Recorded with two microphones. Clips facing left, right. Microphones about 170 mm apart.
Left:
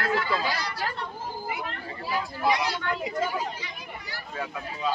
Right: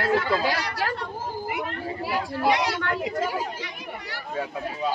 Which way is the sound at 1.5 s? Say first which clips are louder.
Right 5 dB; 70° right (ahead or behind).